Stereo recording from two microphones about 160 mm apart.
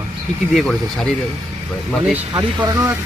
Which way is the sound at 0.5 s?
5° left (ahead or behind).